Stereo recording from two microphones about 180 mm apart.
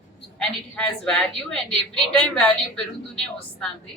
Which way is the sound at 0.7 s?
5° left (ahead or behind).